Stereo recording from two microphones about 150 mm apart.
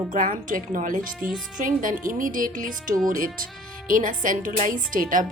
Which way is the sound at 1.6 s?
65° right (ahead or behind).